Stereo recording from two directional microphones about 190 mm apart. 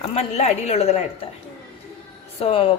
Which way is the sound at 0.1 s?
35° left (ahead or behind).